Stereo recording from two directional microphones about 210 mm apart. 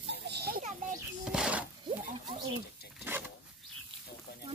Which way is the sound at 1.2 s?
5° right (ahead or behind).